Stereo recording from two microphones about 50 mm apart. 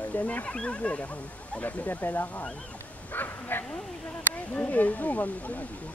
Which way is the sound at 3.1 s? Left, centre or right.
Left.